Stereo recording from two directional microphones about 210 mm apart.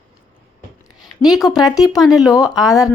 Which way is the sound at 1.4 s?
15° left (ahead or behind).